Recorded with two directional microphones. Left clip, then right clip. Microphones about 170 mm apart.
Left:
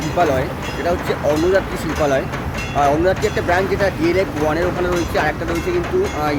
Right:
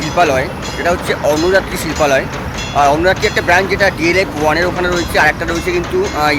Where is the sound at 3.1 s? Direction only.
10° left (ahead or behind).